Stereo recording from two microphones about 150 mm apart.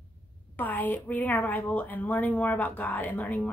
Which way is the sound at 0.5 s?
10° left (ahead or behind).